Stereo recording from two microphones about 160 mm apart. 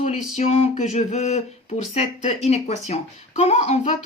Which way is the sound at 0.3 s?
40° left (ahead or behind).